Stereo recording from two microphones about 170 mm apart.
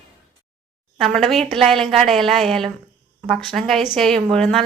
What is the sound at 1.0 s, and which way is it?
A woman's voice, centre (ahead or behind).